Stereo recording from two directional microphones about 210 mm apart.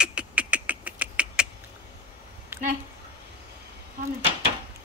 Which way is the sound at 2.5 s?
10° right (ahead or behind).